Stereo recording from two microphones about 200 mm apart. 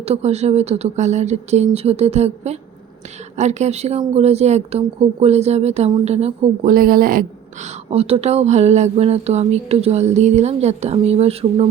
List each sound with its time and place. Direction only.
0.0 s a woman's voice: 30° right (ahead or behind)